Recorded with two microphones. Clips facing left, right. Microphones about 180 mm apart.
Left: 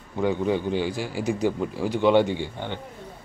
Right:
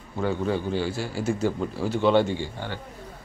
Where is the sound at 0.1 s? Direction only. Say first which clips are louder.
Left 2 dB; 15° left (ahead or behind).